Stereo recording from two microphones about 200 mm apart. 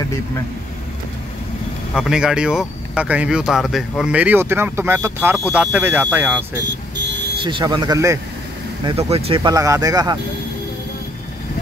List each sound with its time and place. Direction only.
2.0 s speech: 5° right (ahead or behind)
7.4 s speech: 25° right (ahead or behind)
8.8 s speech: 30° right (ahead or behind)